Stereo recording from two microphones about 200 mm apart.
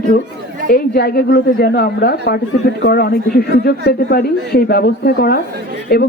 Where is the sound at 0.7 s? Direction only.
50° left (ahead or behind).